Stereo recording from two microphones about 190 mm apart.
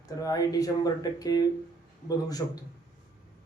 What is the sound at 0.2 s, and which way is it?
Speech, 20° left (ahead or behind).